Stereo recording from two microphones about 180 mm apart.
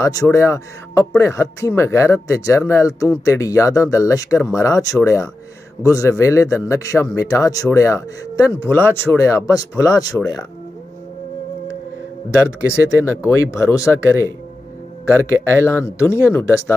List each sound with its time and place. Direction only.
0.0 s speech: 15° left (ahead or behind)
12.4 s speech: 15° left (ahead or behind)
15.6 s speech: 15° left (ahead or behind)